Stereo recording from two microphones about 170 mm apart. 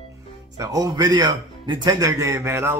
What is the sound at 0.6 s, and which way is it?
Speech, 20° right (ahead or behind).